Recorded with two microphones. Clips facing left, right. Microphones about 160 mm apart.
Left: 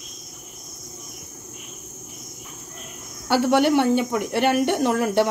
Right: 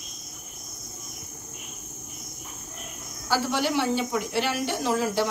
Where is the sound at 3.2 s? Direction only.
60° left (ahead or behind).